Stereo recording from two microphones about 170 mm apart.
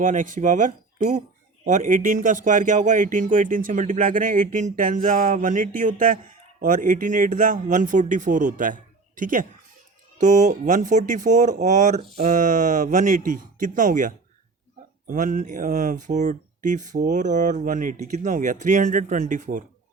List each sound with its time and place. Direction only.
0.0 s speech: 50° right (ahead or behind)